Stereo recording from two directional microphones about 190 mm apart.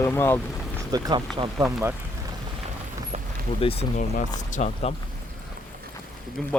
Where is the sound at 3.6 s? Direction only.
30° left (ahead or behind).